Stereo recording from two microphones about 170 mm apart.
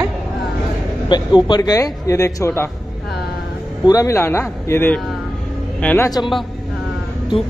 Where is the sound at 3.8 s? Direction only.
20° left (ahead or behind).